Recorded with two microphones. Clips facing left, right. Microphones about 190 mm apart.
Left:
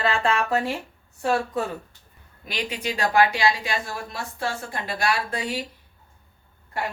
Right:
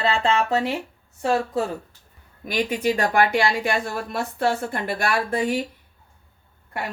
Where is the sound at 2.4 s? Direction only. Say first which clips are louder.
Right 7 dB; 50° right (ahead or behind).